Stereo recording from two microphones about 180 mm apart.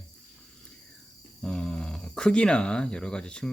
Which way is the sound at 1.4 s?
5° left (ahead or behind).